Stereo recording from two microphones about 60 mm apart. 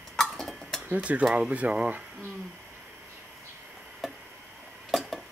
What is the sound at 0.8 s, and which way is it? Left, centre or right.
Speech, right.